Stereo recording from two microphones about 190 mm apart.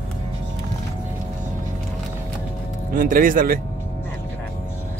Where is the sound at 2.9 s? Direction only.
45° right (ahead or behind).